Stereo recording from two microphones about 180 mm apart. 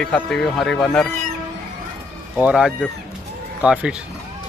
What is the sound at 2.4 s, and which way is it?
Speech, 5° right (ahead or behind).